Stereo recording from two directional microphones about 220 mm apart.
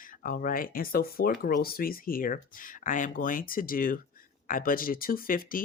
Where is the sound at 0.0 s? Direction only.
40° left (ahead or behind).